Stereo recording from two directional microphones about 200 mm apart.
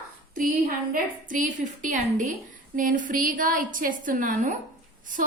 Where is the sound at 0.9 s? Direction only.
40° right (ahead or behind).